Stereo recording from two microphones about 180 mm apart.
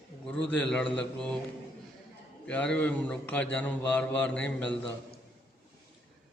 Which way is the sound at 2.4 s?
5° left (ahead or behind).